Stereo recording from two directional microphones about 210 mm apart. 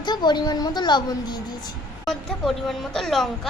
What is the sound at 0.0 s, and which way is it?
A woman's voice, 20° left (ahead or behind).